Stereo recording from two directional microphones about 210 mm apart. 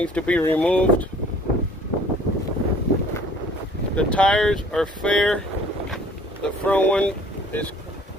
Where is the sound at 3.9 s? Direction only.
5° left (ahead or behind).